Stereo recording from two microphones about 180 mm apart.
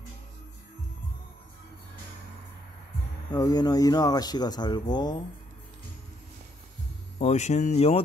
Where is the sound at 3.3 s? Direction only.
20° left (ahead or behind).